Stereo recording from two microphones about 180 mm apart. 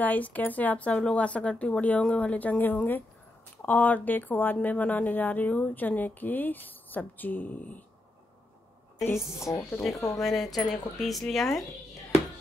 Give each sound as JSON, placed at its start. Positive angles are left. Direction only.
{"t": 0.0, "sound": "a woman's voice", "side_deg": 10}
{"t": 9.0, "sound": "a woman's voice", "side_deg": 15}
{"t": 10.2, "sound": "speech", "side_deg": 0}